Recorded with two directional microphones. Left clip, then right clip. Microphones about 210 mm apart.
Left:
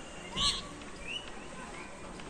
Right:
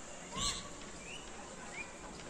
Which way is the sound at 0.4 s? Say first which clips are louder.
Left 8 dB; 45° right (ahead or behind).